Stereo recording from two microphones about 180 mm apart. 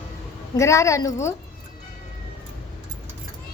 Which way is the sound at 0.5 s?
15° left (ahead or behind).